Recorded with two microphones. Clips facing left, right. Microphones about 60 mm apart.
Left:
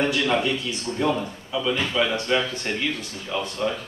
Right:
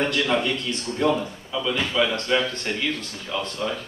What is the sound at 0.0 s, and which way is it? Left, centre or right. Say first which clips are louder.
A man's voice: even; centre.